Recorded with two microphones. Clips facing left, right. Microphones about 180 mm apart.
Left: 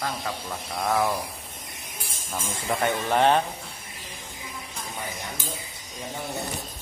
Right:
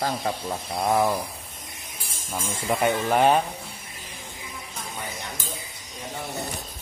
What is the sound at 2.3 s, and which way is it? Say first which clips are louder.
Speech: right 2 dB; 10° right (ahead or behind).